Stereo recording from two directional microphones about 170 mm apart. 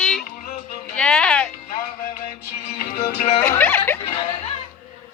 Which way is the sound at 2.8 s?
50° left (ahead or behind).